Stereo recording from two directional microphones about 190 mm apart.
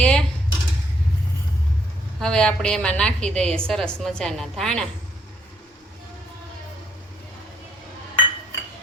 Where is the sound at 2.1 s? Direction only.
5° left (ahead or behind).